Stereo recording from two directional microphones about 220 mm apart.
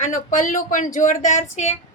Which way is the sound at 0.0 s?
35° left (ahead or behind).